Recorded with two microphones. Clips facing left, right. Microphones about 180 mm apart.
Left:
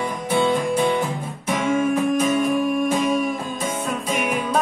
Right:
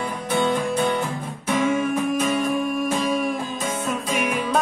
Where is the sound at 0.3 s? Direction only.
10° left (ahead or behind).